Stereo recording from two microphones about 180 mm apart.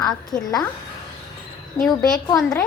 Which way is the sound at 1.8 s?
Centre (ahead or behind).